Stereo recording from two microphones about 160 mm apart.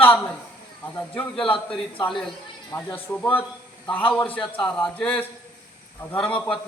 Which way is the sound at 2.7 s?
10° left (ahead or behind).